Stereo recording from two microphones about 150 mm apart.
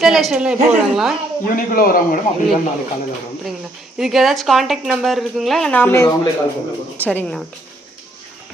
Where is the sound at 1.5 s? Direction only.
70° left (ahead or behind).